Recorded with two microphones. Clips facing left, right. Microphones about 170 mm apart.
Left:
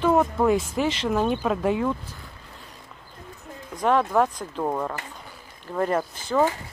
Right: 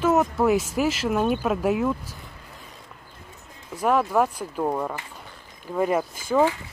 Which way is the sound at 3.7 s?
5° right (ahead or behind).